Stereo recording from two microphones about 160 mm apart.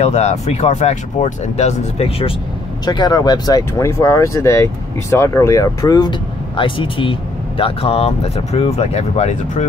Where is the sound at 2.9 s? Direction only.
25° left (ahead or behind).